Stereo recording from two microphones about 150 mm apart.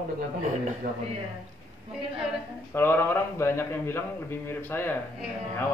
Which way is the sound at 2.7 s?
15° left (ahead or behind).